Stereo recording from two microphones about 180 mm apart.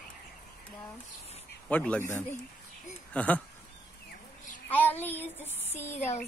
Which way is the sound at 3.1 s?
5° left (ahead or behind).